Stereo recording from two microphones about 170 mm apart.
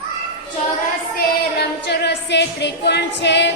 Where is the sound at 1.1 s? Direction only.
70° left (ahead or behind).